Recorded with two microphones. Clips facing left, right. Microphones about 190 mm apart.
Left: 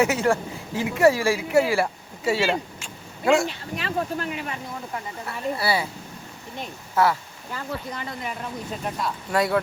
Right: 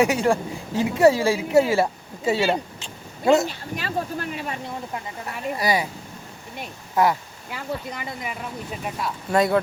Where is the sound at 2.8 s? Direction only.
20° right (ahead or behind).